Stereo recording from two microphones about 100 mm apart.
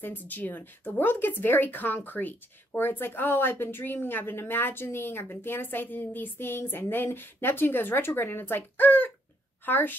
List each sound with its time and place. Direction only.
0.0 s speech: 20° left (ahead or behind)